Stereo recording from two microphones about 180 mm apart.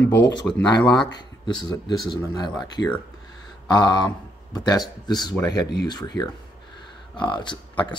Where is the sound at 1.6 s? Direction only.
20° left (ahead or behind).